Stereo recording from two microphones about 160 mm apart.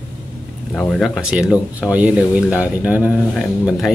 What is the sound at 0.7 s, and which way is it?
Speech, 5° left (ahead or behind).